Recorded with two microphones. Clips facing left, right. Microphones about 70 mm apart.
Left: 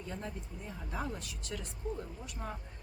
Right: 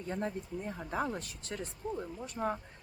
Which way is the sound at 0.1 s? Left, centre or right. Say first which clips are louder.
Right 8 dB; right.